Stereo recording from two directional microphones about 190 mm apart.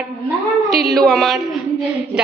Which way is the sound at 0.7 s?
Centre (ahead or behind).